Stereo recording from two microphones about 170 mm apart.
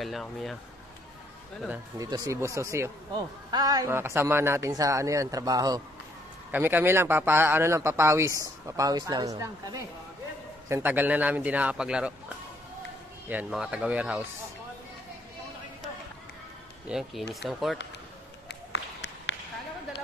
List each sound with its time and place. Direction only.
0.0 s speech: centre (ahead or behind)
2.0 s a man's voice: 20° right (ahead or behind)
6.5 s a man's voice: 10° right (ahead or behind)
16.8 s speech: 5° right (ahead or behind)
18.5 s a sound: 90° left